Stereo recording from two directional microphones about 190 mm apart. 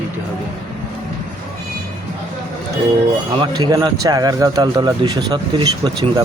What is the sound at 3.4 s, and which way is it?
Speech, 20° right (ahead or behind).